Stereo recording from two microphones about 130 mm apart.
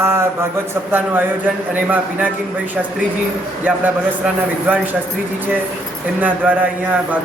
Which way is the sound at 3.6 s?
10° right (ahead or behind).